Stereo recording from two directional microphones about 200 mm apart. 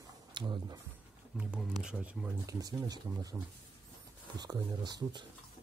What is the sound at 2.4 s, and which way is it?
Speech, 20° right (ahead or behind).